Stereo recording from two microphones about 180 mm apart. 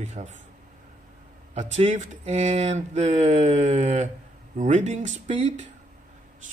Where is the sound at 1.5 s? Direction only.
40° right (ahead or behind).